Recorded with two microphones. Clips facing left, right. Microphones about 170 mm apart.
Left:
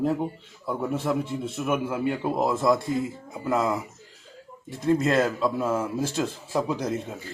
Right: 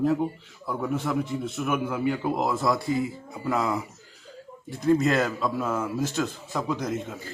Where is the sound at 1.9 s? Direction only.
5° left (ahead or behind).